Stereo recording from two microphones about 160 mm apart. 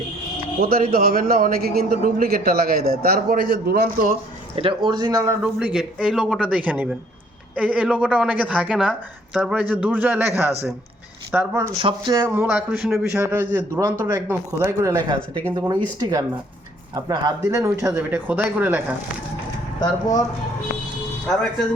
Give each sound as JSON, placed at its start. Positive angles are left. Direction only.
{"t": 0.6, "sound": "a man's voice", "side_deg": -70}
{"t": 4.5, "sound": "speech", "side_deg": -30}
{"t": 5.4, "sound": "a woman's voice", "side_deg": -5}
{"t": 11.8, "sound": "speech", "side_deg": -30}
{"t": 12.3, "sound": "a woman's voice", "side_deg": -10}
{"t": 17.9, "sound": "a woman's voice", "side_deg": -10}
{"t": 19.8, "sound": "speech", "side_deg": 25}